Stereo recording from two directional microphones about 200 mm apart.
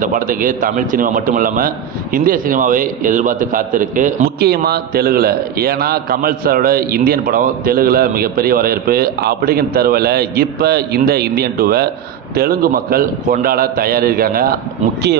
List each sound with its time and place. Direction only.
0.0 s a man's voice: 40° right (ahead or behind)